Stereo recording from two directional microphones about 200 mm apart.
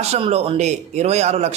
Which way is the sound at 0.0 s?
30° right (ahead or behind).